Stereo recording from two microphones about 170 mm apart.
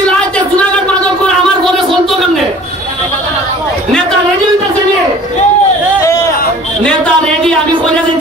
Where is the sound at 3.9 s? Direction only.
5° left (ahead or behind).